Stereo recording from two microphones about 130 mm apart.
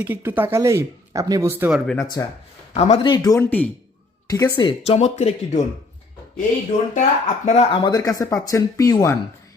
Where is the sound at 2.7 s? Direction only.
55° left (ahead or behind).